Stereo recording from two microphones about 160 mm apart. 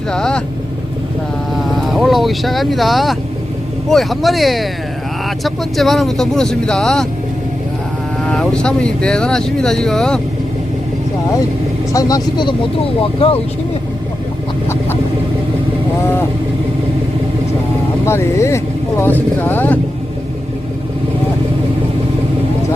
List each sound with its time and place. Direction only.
0.1 s speech: 5° left (ahead or behind)
1.9 s speech: centre (ahead or behind)
8.2 s speech: 5° left (ahead or behind)
11.9 s speech: 25° left (ahead or behind)
18.0 s speech: 15° left (ahead or behind)